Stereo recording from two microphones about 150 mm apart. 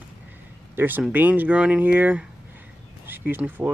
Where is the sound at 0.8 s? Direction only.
15° right (ahead or behind).